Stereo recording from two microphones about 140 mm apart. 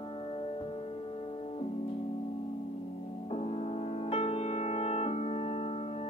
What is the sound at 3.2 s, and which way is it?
Music, 45° left (ahead or behind).